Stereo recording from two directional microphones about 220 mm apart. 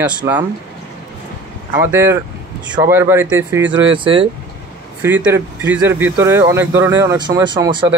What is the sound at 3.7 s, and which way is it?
Speech, 20° right (ahead or behind).